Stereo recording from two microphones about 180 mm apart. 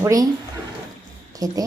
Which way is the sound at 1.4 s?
20° right (ahead or behind).